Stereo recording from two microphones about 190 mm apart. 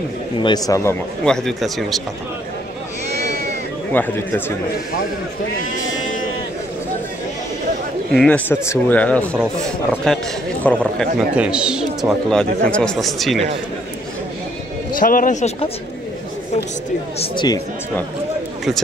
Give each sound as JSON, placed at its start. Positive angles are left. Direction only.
{"t": 0.4, "sound": "speech", "side_deg": 20}
{"t": 1.2, "sound": "speech", "side_deg": 5}
{"t": 3.9, "sound": "speech", "side_deg": 10}
{"t": 8.1, "sound": "speech", "side_deg": 5}
{"t": 11.3, "sound": "speech", "side_deg": -5}
{"t": 15.0, "sound": "speech", "side_deg": 45}
{"t": 17.2, "sound": "speech", "side_deg": 25}